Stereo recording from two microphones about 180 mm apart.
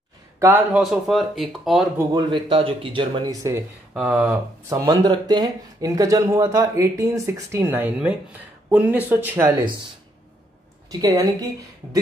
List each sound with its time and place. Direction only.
0.4 s speech: 10° right (ahead or behind)
0.8 s speech: centre (ahead or behind)
2.1 s speech: 25° right (ahead or behind)
10.9 s a woman's voice: 20° right (ahead or behind)